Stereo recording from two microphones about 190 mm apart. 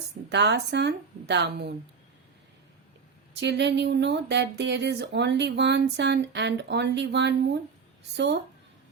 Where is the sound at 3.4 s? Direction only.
65° right (ahead or behind).